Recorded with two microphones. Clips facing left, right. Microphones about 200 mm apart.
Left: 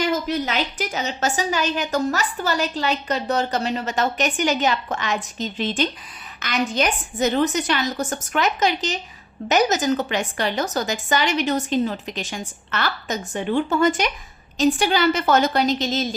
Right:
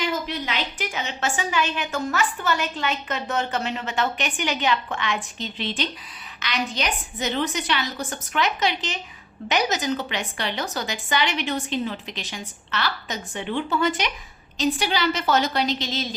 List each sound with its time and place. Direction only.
0.0 s a woman's voice: 45° left (ahead or behind)